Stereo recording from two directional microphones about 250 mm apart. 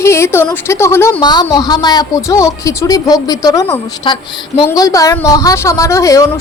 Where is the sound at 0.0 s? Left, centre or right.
Centre.